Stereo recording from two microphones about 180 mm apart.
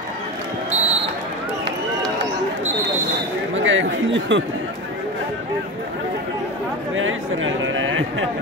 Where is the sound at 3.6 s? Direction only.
90° right.